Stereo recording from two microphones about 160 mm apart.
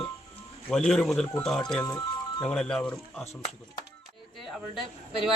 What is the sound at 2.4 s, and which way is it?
Speech, 5° left (ahead or behind).